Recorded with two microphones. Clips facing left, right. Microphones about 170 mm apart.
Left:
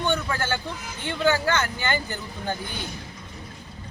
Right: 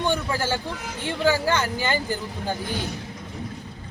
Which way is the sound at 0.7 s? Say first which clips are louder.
Right 3 dB; 75° right (ahead or behind).